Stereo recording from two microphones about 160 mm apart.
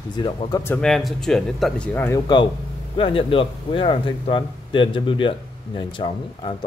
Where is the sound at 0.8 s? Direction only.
5° left (ahead or behind).